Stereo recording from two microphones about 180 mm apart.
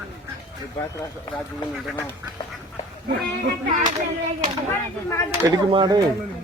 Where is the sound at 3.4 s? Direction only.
45° right (ahead or behind).